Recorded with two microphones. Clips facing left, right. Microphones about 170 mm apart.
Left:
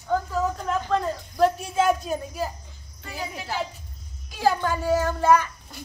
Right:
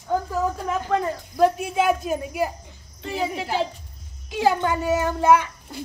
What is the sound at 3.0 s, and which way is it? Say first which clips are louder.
A woman's voice: right 8 dB; 25° right (ahead or behind).